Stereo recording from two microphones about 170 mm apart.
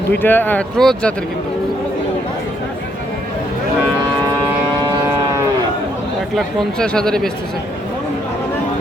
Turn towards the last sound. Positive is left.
turn(degrees=5)  # may be behind; listen again after turning